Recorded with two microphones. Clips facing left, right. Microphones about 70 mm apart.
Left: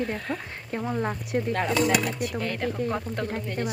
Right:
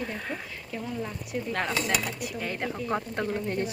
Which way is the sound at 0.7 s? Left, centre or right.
Left.